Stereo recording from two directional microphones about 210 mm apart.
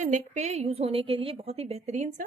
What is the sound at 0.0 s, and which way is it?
A woman's voice, 35° right (ahead or behind).